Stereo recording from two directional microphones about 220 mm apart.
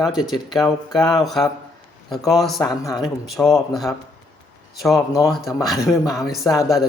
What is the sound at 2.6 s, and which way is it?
Speech, 15° left (ahead or behind).